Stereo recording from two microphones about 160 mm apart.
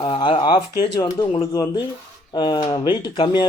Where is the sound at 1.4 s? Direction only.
25° left (ahead or behind).